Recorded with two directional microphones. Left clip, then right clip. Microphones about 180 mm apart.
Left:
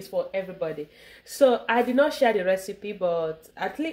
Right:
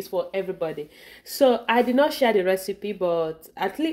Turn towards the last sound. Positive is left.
turn(degrees=-50)  # may be behind; listen again after turning